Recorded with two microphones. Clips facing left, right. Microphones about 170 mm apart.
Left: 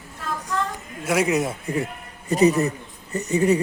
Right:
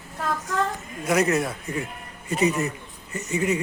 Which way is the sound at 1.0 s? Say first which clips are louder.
Left 1 dB; 10° left (ahead or behind).